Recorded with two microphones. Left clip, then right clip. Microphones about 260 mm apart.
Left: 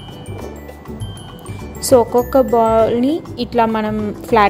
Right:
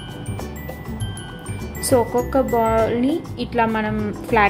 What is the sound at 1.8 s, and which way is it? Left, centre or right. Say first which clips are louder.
A woman's voice: left 6 dB; left.